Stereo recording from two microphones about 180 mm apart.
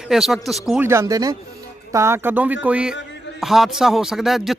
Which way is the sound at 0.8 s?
15° right (ahead or behind).